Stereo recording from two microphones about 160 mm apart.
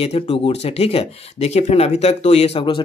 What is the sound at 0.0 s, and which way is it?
Speech, 40° left (ahead or behind).